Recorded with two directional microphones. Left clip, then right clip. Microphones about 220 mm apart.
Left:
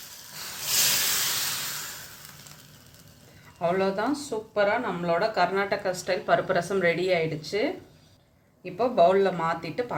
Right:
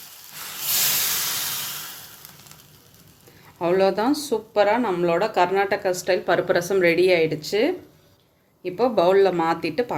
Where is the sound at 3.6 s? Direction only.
40° right (ahead or behind).